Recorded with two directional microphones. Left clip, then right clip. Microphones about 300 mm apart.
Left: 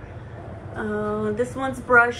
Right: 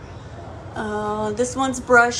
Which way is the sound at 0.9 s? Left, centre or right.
Centre.